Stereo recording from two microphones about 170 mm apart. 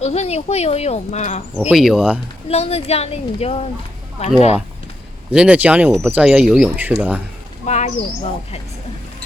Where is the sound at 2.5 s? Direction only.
35° left (ahead or behind).